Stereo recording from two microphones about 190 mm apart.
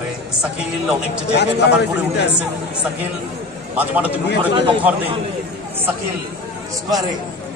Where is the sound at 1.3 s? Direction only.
65° left (ahead or behind).